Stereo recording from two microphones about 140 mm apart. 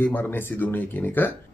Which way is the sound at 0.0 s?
15° left (ahead or behind).